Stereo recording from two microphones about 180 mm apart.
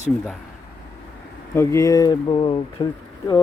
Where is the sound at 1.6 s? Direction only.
15° left (ahead or behind).